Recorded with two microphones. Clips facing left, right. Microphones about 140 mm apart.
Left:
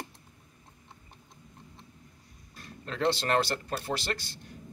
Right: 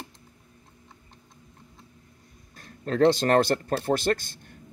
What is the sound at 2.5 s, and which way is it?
Speech, 45° right (ahead or behind).